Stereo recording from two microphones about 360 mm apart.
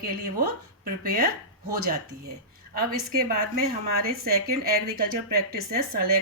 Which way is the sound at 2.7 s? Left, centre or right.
Right.